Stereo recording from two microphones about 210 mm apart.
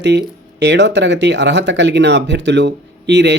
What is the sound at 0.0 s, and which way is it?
Speech, 55° right (ahead or behind).